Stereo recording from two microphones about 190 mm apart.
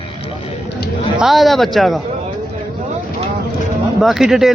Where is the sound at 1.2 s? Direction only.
Centre (ahead or behind).